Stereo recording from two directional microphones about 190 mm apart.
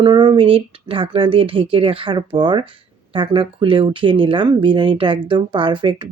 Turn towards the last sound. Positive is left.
turn(degrees=-25)  # may be behind; listen again after turning